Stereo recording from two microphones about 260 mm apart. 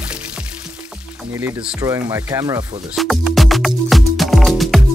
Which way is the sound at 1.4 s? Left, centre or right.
Centre.